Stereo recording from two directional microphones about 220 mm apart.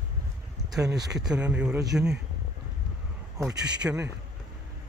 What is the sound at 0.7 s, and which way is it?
Speech, 15° right (ahead or behind).